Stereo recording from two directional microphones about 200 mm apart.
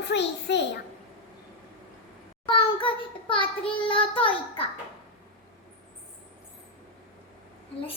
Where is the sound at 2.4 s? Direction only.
25° left (ahead or behind).